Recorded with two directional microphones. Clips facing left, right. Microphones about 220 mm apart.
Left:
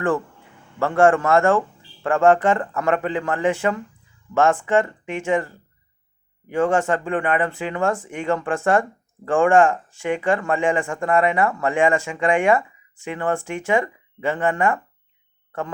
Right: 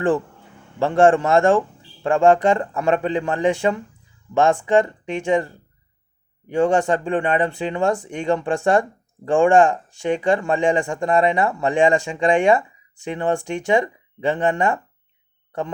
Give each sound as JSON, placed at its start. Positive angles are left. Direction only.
{"t": 0.8, "sound": "speech", "side_deg": -15}